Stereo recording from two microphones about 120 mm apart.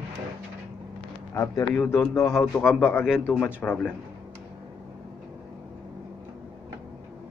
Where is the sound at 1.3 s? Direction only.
25° left (ahead or behind).